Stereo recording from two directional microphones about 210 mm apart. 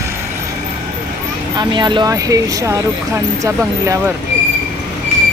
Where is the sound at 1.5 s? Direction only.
20° right (ahead or behind).